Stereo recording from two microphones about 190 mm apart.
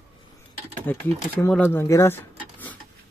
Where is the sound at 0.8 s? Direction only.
10° left (ahead or behind).